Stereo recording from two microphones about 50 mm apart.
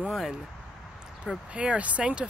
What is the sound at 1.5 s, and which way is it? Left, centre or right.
Speech, right.